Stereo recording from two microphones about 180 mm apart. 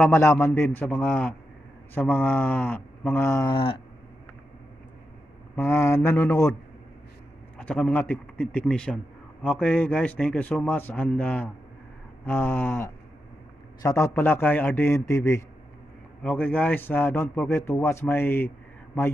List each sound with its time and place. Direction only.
0.0 s a man's voice: 15° left (ahead or behind)
5.6 s a man's voice: 15° left (ahead or behind)
7.5 s a man's voice: 5° left (ahead or behind)